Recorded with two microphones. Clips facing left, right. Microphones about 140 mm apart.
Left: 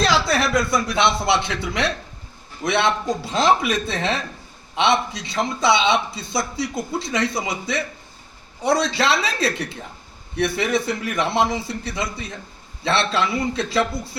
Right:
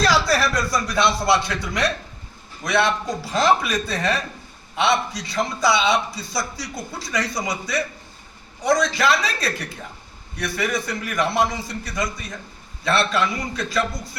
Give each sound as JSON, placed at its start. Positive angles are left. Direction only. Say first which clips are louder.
{"t": 0.0, "sound": "a man's voice", "louder": "even", "side_deg": 25}